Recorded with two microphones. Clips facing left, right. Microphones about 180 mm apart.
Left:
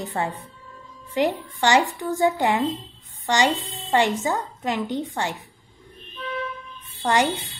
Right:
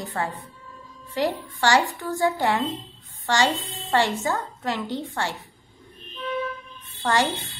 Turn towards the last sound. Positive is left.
turn(degrees=15)  # may be behind; listen again after turning